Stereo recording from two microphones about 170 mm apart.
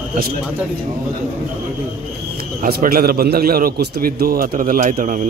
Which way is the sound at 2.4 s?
60° right (ahead or behind).